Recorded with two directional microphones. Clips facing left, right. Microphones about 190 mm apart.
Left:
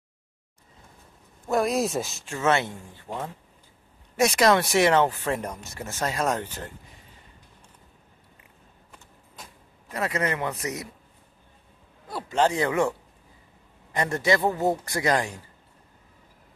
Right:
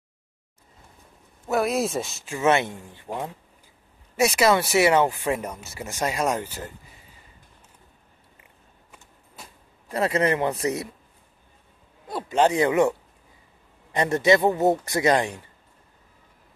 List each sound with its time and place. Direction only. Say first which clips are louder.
1.5 s speech: even; centre (ahead or behind)
2.3 s speech: right 3 dB; 15° right (ahead or behind)
4.2 s speech: even; 5° right (ahead or behind)
8.9 s vehicle: even; 5° right (ahead or behind)
9.8 s a man's voice: right 5 dB; 30° right (ahead or behind)
12.1 s speech: right 3 dB; 20° right (ahead or behind)
13.9 s a man's voice: right 4 dB; 20° right (ahead or behind)